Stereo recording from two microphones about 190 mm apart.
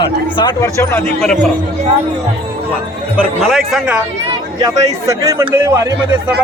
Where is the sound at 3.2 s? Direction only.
Centre (ahead or behind).